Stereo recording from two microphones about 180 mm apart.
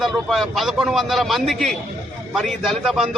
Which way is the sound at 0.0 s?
Centre (ahead or behind).